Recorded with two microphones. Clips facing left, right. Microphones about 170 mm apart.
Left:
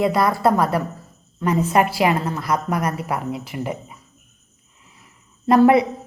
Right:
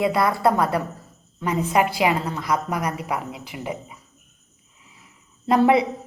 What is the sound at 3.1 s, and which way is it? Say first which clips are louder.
Speech: left 3 dB; 15° right (ahead or behind).